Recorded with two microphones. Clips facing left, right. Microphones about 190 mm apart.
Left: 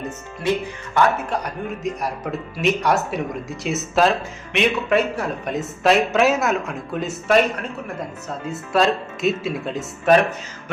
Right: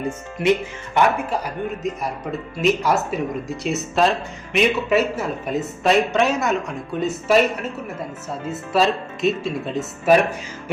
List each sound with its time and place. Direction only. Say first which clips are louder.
0.4 s speech: right 3 dB; 20° right (ahead or behind)
1.8 s speech: even; centre (ahead or behind)
8.7 s speech: left 1 dB; centre (ahead or behind)